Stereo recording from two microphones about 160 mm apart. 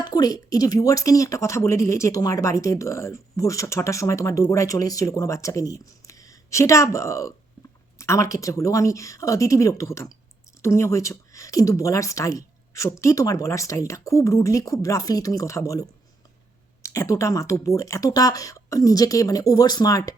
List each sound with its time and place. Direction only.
0.0 s a woman's voice: 25° left (ahead or behind)